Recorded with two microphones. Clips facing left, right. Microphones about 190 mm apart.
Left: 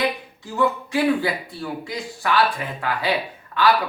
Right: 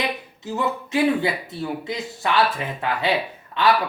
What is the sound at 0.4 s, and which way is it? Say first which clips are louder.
Speech: left 3 dB; 20° right (ahead or behind).